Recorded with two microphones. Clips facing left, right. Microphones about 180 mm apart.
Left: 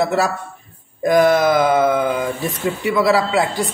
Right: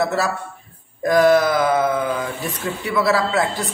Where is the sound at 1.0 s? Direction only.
15° left (ahead or behind).